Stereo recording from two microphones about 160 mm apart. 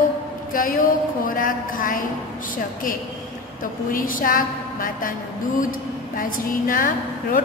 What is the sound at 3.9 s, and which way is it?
A woman's voice, 60° left (ahead or behind).